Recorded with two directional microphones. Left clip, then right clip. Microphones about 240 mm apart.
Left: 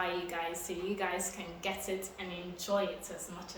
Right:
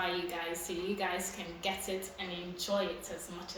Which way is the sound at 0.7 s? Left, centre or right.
Centre.